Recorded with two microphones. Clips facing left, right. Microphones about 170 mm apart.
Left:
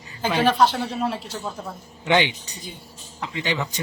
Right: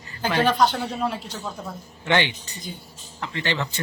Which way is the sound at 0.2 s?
5° left (ahead or behind).